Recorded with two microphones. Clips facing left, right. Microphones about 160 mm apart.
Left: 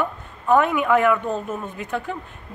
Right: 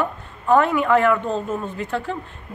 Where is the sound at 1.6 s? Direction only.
15° left (ahead or behind).